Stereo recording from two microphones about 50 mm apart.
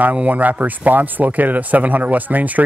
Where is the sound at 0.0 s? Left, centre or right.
Right.